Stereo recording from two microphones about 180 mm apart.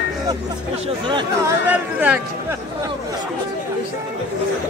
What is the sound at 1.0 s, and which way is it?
Speech, 25° right (ahead or behind).